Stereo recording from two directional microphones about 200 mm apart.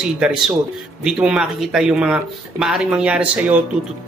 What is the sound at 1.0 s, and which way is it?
Speech, 5° right (ahead or behind).